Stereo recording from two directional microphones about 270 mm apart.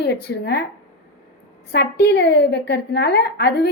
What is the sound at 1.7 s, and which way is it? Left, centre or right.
A woman's voice, left.